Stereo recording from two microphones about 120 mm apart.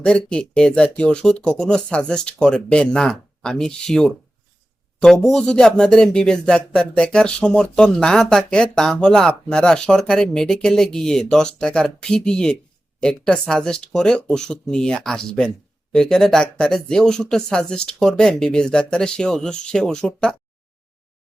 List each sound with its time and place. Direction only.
0.0 s speech: 5° left (ahead or behind)